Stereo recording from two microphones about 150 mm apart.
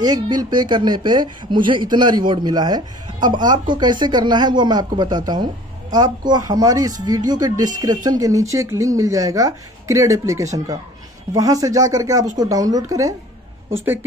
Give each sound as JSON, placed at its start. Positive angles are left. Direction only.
{"t": 0.0, "sound": "a woman's voice", "side_deg": -25}